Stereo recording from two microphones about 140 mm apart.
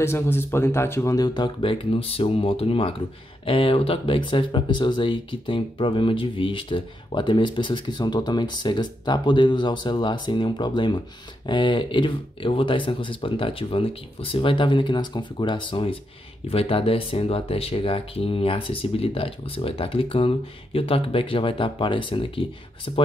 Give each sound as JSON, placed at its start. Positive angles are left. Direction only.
{"t": 0.0, "sound": "speech", "side_deg": 15}